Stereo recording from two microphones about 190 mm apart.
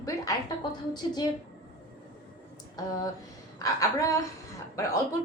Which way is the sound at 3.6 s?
15° left (ahead or behind).